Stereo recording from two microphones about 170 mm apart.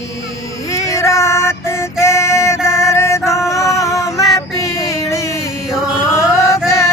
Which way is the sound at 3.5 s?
15° left (ahead or behind).